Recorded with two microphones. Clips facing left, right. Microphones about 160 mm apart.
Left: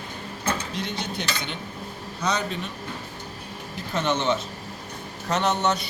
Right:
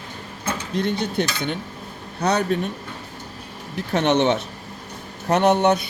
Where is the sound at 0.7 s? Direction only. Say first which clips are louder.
Right 8 dB; 55° right (ahead or behind).